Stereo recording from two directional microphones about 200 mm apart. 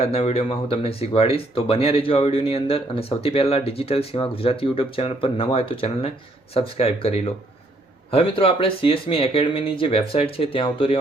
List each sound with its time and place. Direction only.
0.0 s speech: 30° left (ahead or behind)